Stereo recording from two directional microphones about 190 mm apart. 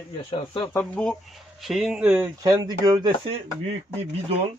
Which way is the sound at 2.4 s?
20° right (ahead or behind).